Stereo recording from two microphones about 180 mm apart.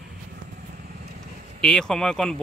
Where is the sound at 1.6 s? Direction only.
5° left (ahead or behind).